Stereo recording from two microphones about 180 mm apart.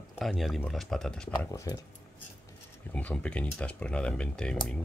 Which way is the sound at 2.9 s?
5° left (ahead or behind).